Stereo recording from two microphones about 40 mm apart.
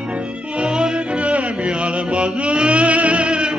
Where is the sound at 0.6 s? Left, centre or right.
Right.